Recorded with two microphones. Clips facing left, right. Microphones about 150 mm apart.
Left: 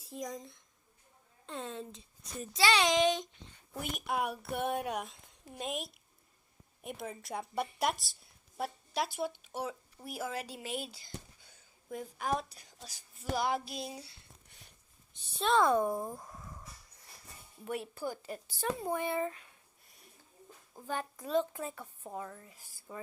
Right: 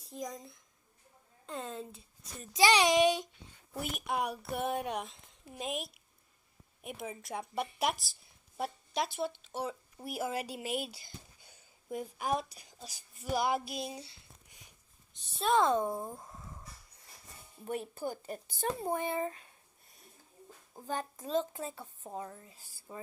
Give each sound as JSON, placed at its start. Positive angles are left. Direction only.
{"t": 0.0, "sound": "a woman's voice", "side_deg": 0}
{"t": 2.5, "sound": "a woman's voice", "side_deg": -15}
{"t": 10.0, "sound": "a woman's voice", "side_deg": -15}
{"t": 15.5, "sound": "speech", "side_deg": -20}
{"t": 17.7, "sound": "speech", "side_deg": -45}
{"t": 20.7, "sound": "a child's voice", "side_deg": -20}